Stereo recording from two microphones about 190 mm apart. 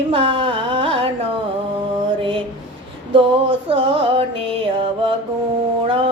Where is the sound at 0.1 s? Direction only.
30° right (ahead or behind).